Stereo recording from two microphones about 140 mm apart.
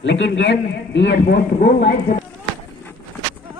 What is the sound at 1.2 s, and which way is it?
Speech, 65° left (ahead or behind).